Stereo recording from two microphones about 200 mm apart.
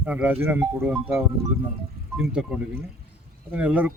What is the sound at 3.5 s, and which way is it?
Speech, 5° right (ahead or behind).